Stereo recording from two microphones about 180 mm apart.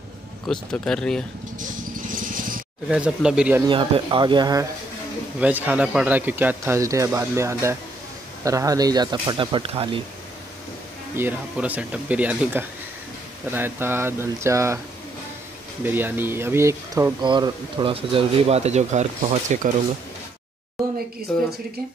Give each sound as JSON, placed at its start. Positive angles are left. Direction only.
{"t": 0.5, "sound": "speech", "side_deg": 5}
{"t": 1.6, "sound": "vehicle", "side_deg": -50}
{"t": 2.9, "sound": "speech", "side_deg": -5}
{"t": 3.6, "sound": "speech", "side_deg": -30}
{"t": 5.4, "sound": "speech", "side_deg": -10}
{"t": 11.1, "sound": "speech", "side_deg": -10}
{"t": 15.8, "sound": "speech", "side_deg": -10}
{"t": 21.3, "sound": "speech", "side_deg": 5}